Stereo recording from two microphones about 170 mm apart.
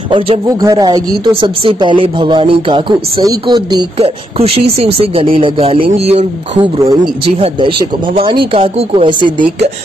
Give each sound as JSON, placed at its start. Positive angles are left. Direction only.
{"t": 0.1, "sound": "speech", "side_deg": -25}